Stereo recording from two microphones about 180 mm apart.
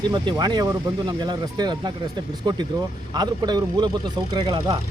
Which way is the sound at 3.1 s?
25° right (ahead or behind).